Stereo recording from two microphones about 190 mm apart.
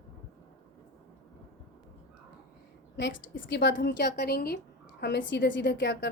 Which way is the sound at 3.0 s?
70° left (ahead or behind).